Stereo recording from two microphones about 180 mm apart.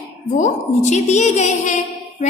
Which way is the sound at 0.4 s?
40° left (ahead or behind).